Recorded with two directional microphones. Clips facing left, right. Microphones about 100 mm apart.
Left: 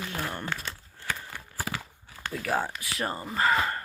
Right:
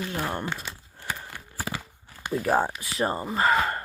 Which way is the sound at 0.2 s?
30° right (ahead or behind).